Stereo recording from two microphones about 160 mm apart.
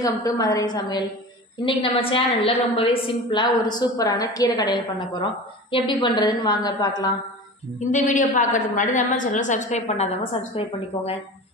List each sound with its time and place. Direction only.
0.0 s a woman's voice: 20° left (ahead or behind)
1.6 s a woman's voice: 35° left (ahead or behind)
7.9 s a woman's voice: 50° left (ahead or behind)